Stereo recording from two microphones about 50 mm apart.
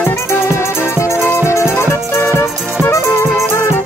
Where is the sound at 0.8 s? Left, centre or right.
Left.